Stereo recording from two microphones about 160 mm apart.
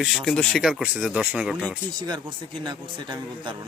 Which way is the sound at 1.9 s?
25° right (ahead or behind).